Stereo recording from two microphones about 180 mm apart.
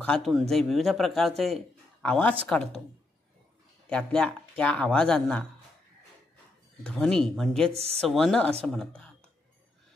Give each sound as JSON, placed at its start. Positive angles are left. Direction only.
{"t": 0.0, "sound": "speech", "side_deg": 5}
{"t": 3.9, "sound": "speech", "side_deg": 5}
{"t": 6.8, "sound": "speech", "side_deg": 5}
{"t": 7.7, "sound": "speech", "side_deg": -35}
{"t": 8.1, "sound": "speech", "side_deg": 0}